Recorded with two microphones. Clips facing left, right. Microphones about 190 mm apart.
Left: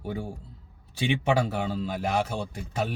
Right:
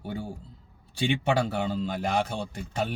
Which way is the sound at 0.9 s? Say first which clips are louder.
Even; 5° left (ahead or behind).